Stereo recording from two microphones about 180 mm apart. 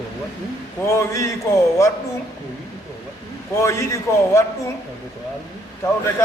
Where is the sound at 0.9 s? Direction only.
15° left (ahead or behind).